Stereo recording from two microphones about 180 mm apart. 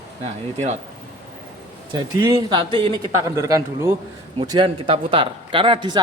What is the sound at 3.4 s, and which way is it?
Speech, 15° right (ahead or behind).